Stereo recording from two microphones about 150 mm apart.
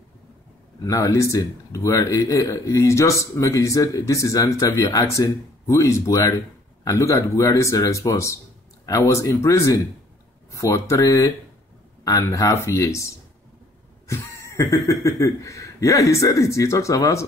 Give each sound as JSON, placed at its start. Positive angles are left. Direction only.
{"t": 0.8, "sound": "speech", "side_deg": 20}